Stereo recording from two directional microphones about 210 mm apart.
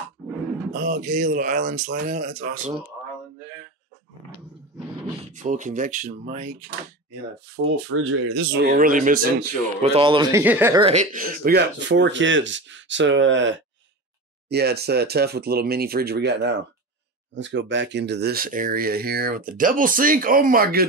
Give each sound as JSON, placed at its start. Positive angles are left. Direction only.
{"t": 0.7, "sound": "speech", "side_deg": -40}
{"t": 5.3, "sound": "speech", "side_deg": -35}
{"t": 7.6, "sound": "speech", "side_deg": -70}
{"t": 8.6, "sound": "speech", "side_deg": -40}
{"t": 9.8, "sound": "speech", "side_deg": -30}
{"t": 10.4, "sound": "speech", "side_deg": -10}
{"t": 10.8, "sound": "speech", "side_deg": -30}
{"t": 14.5, "sound": "speech", "side_deg": -50}